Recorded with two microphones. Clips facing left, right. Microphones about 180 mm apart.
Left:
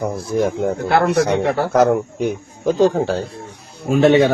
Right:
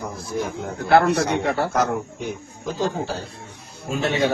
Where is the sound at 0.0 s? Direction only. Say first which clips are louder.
Left 8 dB; 65° left (ahead or behind).